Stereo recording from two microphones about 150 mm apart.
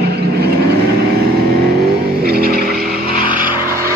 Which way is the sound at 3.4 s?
70° right (ahead or behind).